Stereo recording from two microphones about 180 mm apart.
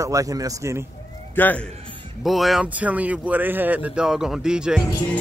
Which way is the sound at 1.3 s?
10° left (ahead or behind).